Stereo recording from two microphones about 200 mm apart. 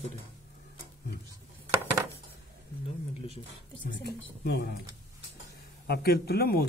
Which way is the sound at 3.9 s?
60° left (ahead or behind).